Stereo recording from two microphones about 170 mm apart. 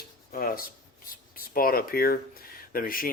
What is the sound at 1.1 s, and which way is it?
Speech, 55° left (ahead or behind).